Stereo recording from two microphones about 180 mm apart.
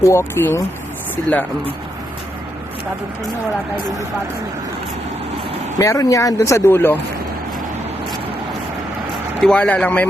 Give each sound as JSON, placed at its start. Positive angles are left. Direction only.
{"t": 0.0, "sound": "speech", "side_deg": 15}
{"t": 5.8, "sound": "speech", "side_deg": 20}
{"t": 9.4, "sound": "speech", "side_deg": 5}